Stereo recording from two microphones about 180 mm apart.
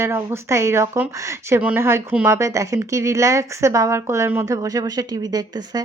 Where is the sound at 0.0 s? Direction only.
15° right (ahead or behind).